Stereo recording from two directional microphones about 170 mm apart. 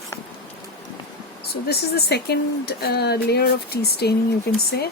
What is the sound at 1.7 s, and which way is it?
Speech, 70° left (ahead or behind).